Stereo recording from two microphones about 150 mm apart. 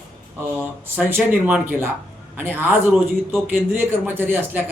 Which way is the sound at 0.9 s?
10° right (ahead or behind).